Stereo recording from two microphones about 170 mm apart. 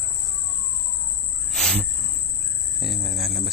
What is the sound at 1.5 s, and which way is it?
Cricket, 5° left (ahead or behind).